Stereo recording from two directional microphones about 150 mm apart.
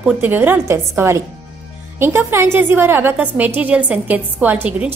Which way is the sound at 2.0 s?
15° right (ahead or behind).